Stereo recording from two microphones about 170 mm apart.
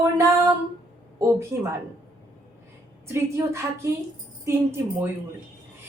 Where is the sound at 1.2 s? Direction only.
15° right (ahead or behind).